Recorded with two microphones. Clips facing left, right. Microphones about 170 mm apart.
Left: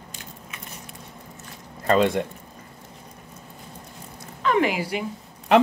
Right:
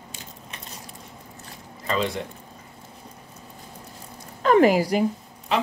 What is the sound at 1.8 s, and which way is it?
Speech, 55° left (ahead or behind).